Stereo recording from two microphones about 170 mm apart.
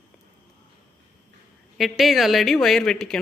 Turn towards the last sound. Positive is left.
turn(degrees=0)  # may be behind; listen again after turning